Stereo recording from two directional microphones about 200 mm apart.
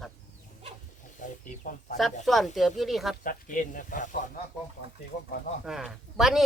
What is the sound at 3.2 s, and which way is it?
Speech, 45° left (ahead or behind).